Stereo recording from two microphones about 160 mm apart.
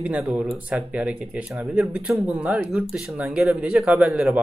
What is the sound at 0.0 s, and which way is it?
A man's voice, 5° right (ahead or behind).